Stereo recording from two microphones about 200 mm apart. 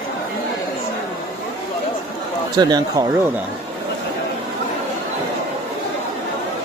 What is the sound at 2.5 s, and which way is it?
Speech, 20° right (ahead or behind).